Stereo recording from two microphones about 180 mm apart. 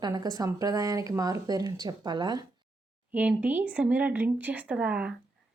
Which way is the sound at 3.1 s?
10° right (ahead or behind).